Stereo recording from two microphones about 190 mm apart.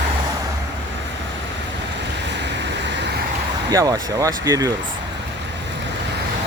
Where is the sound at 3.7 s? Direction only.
20° right (ahead or behind).